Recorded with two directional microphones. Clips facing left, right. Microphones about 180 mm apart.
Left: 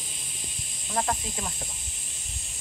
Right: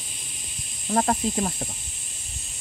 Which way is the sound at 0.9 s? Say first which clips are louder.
Right 7 dB; 40° right (ahead or behind).